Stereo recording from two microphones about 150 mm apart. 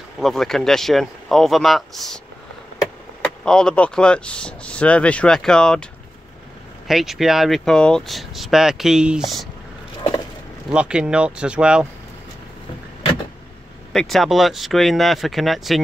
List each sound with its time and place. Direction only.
0.2 s speech: centre (ahead or behind)
3.4 s speech: 5° left (ahead or behind)
6.9 s speech: centre (ahead or behind)
10.7 s speech: 5° right (ahead or behind)
13.9 s speech: centre (ahead or behind)